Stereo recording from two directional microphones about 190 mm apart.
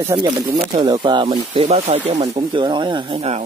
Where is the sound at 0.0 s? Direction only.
15° right (ahead or behind).